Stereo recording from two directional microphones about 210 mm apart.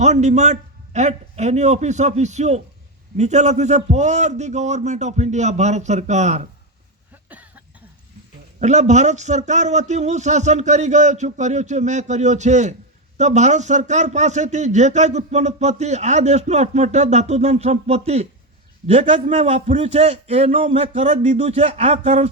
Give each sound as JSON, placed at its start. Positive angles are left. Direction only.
{"t": 0.0, "sound": "speech", "side_deg": -35}
{"t": 7.3, "sound": "cough", "side_deg": -5}
{"t": 8.6, "sound": "a man's voice", "side_deg": -35}